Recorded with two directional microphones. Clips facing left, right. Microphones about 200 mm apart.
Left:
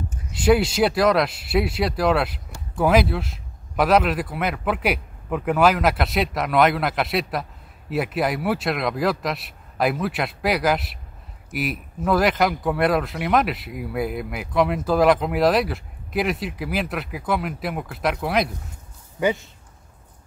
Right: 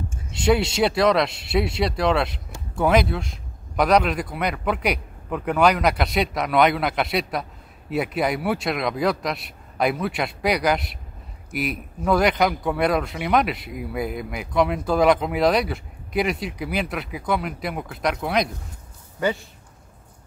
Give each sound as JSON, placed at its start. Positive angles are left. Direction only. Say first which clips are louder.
{"t": 0.4, "sound": "speech", "louder": "left 2 dB", "side_deg": 5}
{"t": 19.1, "sound": "a man's voice", "louder": "left 2 dB", "side_deg": 15}